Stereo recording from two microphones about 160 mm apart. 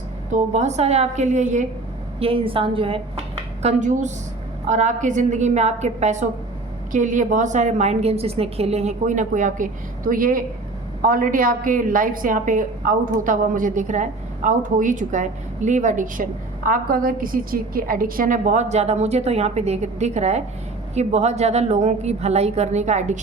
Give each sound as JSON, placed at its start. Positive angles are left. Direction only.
{"t": 0.3, "sound": "a woman's voice", "side_deg": -50}
{"t": 2.1, "sound": "a woman's voice", "side_deg": -35}
{"t": 3.6, "sound": "a woman's voice", "side_deg": -45}